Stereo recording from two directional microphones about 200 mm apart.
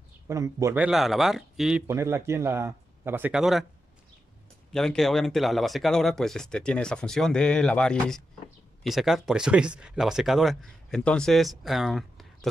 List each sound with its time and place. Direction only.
0.3 s speech: 15° right (ahead or behind)
0.8 s speech: centre (ahead or behind)
4.7 s speech: centre (ahead or behind)